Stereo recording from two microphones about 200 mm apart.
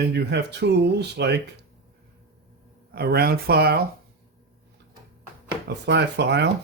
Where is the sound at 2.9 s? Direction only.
50° right (ahead or behind).